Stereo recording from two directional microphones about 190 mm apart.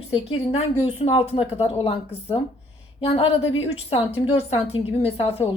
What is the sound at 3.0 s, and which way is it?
A woman's voice, 30° left (ahead or behind).